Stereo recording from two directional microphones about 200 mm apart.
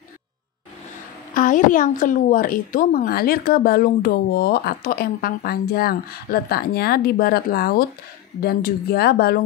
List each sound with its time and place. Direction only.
1.3 s speech: 40° left (ahead or behind)